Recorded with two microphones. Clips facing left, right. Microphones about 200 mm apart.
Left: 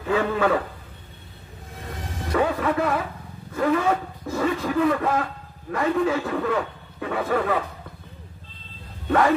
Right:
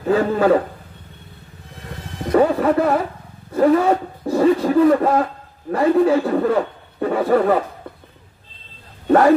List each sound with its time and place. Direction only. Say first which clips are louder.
0.0 s speech: right 5 dB; 40° right (ahead or behind)
2.3 s speech: right 7 dB; 40° right (ahead or behind)